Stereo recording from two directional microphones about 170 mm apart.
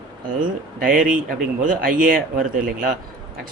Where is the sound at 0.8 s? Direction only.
55° right (ahead or behind).